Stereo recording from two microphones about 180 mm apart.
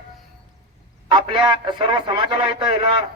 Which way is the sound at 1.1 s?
30° right (ahead or behind).